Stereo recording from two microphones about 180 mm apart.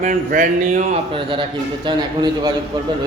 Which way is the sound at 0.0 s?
45° right (ahead or behind).